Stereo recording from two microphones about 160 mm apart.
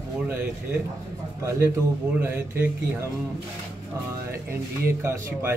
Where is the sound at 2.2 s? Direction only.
15° right (ahead or behind).